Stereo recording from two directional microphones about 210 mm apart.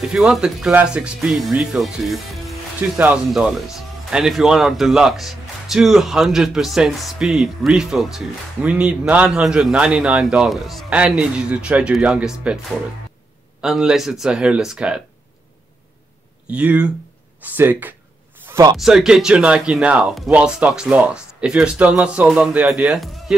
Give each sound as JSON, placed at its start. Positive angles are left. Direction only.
{"t": 0.0, "sound": "speech", "side_deg": -5}
{"t": 16.4, "sound": "speech", "side_deg": -5}
{"t": 18.8, "sound": "speech", "side_deg": 0}